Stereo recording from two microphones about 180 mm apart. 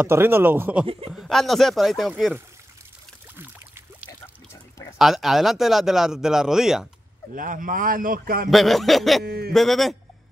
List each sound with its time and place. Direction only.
0.0 s speech: 10° right (ahead or behind)
1.1 s speech: centre (ahead or behind)
3.3 s pour: 10° right (ahead or behind)
4.5 s a sound: 15° left (ahead or behind)
4.9 s speech: centre (ahead or behind)
7.3 s speech: 50° right (ahead or behind)
8.5 s speech: centre (ahead or behind)
9.2 s a sound: 60° right (ahead or behind)
9.5 s speech: centre (ahead or behind)